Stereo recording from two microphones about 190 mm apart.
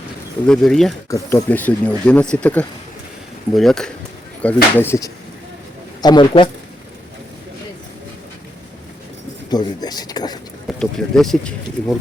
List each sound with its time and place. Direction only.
0.4 s speech: 5° left (ahead or behind); by 6.5 s 25° left (ahead or behind)
9.5 s speech: 20° left (ahead or behind)
10.7 s speech: 5° left (ahead or behind)